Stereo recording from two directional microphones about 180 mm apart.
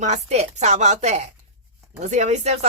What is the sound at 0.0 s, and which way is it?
Speech, 40° right (ahead or behind).